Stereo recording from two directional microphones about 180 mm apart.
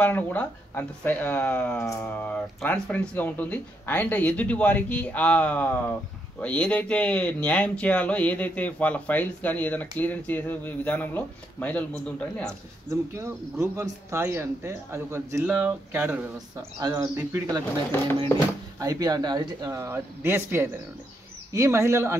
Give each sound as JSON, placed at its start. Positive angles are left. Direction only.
{"t": 0.0, "sound": "speech", "side_deg": 10}
{"t": 13.1, "sound": "speech", "side_deg": -15}
{"t": 16.8, "sound": "speech", "side_deg": -20}
{"t": 18.8, "sound": "speech", "side_deg": -20}